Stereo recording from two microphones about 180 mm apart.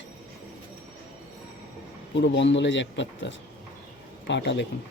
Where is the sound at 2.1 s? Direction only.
80° left.